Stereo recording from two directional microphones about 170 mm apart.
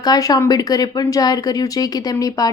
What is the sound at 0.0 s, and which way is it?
Speech, 20° left (ahead or behind).